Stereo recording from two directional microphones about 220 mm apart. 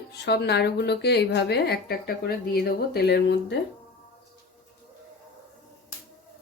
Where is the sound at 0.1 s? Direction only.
50° left (ahead or behind).